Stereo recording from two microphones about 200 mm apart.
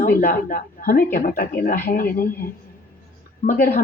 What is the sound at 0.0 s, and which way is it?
A woman's voice, 45° left (ahead or behind).